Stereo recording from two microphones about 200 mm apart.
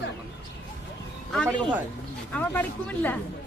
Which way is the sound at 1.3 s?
5° left (ahead or behind).